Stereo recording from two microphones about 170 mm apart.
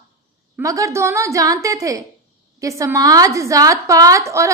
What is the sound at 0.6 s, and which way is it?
A woman's voice, 20° right (ahead or behind).